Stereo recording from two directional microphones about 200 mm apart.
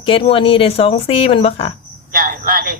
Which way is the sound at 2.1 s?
45° right (ahead or behind).